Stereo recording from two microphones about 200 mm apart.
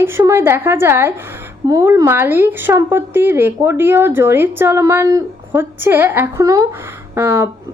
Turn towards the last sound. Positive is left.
turn(degrees=-10)  # may be behind; listen again after turning